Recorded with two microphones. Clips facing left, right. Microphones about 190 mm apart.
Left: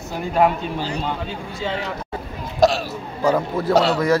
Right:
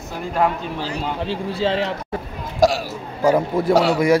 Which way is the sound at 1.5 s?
30° right (ahead or behind).